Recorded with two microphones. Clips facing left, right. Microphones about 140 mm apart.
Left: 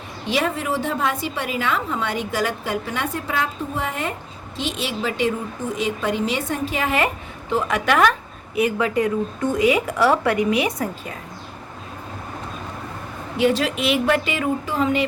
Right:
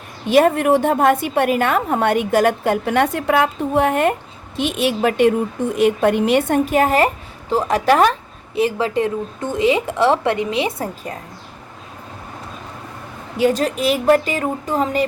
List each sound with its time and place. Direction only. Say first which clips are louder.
0.3 s a woman's voice: right 9 dB; 55° right (ahead or behind); by 10.8 s 25° right (ahead or behind)
13.3 s a woman's voice: right 2 dB; 45° right (ahead or behind)